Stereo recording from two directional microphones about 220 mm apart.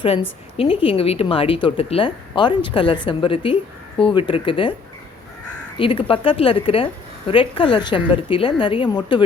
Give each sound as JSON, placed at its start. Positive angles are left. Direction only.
{"t": 0.0, "sound": "a woman's voice", "side_deg": 25}
{"t": 5.7, "sound": "a woman's voice", "side_deg": 25}